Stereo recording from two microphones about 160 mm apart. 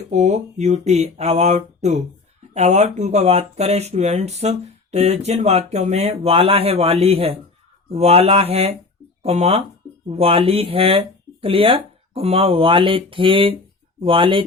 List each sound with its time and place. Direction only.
0.1 s speech: 45° right (ahead or behind)